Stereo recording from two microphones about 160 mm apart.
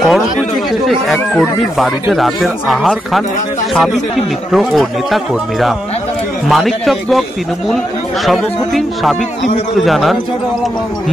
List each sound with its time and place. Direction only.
0.0 s speech: centre (ahead or behind)